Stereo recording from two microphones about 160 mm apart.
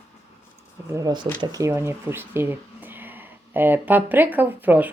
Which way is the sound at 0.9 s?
25° right (ahead or behind).